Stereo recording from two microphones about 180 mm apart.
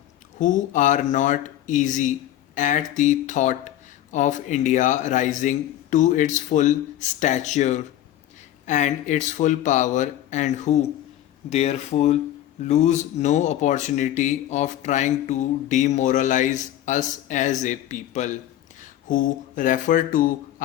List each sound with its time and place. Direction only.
0.3 s speech: 45° left (ahead or behind)